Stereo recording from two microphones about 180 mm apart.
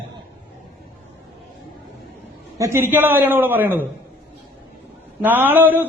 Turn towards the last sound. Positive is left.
turn(degrees=-10)  # may be behind; listen again after turning